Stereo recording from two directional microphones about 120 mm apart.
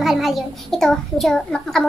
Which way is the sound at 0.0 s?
Centre (ahead or behind).